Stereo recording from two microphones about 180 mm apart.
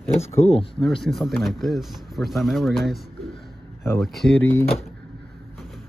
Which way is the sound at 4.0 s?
Centre (ahead or behind).